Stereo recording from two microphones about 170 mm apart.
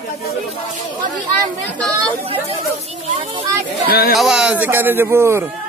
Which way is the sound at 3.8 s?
65° left (ahead or behind).